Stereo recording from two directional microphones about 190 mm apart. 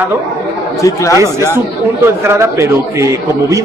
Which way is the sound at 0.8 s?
15° left (ahead or behind).